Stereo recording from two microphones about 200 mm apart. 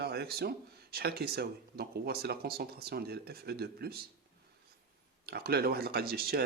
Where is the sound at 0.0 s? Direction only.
50° right (ahead or behind).